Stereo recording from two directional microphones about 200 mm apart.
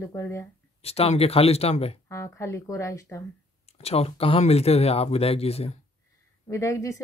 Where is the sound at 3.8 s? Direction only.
30° left (ahead or behind).